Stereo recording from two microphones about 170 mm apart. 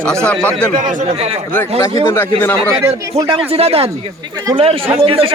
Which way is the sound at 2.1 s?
10° left (ahead or behind).